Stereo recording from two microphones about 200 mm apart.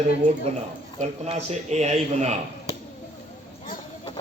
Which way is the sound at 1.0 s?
35° right (ahead or behind).